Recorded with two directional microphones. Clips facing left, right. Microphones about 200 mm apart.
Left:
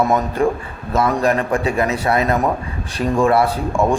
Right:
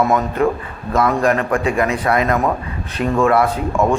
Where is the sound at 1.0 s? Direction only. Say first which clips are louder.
Right 1 dB; 30° left (ahead or behind).